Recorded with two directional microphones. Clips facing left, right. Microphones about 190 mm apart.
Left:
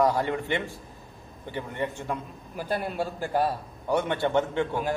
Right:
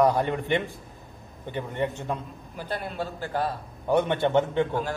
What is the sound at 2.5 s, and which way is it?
A man's voice, 10° left (ahead or behind).